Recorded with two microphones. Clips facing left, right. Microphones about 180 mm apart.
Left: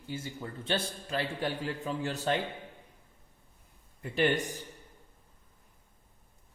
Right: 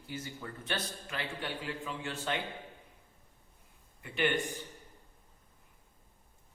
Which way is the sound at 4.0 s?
40° left (ahead or behind).